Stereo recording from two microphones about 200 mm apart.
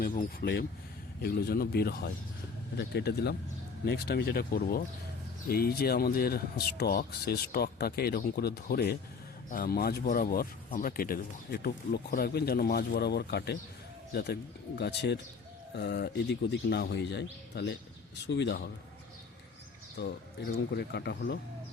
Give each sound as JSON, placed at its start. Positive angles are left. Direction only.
{"t": 0.0, "sound": "a man's voice", "side_deg": 45}
{"t": 20.0, "sound": "a man's voice", "side_deg": 55}